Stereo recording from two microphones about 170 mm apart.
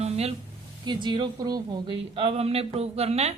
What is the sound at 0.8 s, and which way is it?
Speech, 30° right (ahead or behind).